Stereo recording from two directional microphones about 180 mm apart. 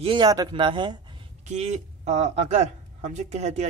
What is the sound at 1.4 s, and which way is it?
Speech, 40° right (ahead or behind).